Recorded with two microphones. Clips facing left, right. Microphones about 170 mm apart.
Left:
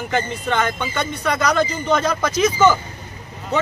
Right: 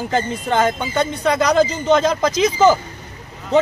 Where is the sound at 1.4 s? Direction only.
20° right (ahead or behind).